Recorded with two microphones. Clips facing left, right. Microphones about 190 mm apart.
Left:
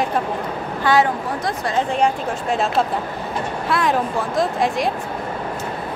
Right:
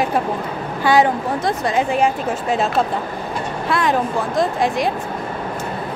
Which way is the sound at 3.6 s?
Centre (ahead or behind).